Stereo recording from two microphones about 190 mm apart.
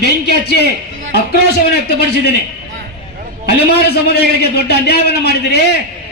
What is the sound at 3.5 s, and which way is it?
A man's voice, 60° left (ahead or behind).